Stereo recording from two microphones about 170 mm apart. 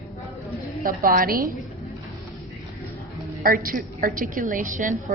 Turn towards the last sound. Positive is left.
turn(degrees=-50)  # may be behind; listen again after turning